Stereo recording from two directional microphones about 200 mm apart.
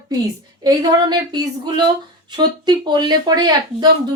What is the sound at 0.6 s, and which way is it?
Speech, 20° right (ahead or behind).